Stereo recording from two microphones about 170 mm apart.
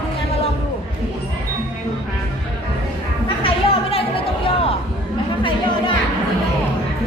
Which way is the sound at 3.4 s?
35° left (ahead or behind).